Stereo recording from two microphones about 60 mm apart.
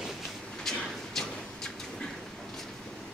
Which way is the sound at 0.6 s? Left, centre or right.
Centre.